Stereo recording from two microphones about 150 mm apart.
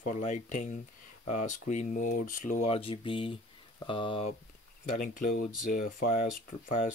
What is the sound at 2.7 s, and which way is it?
Speech, 40° left (ahead or behind).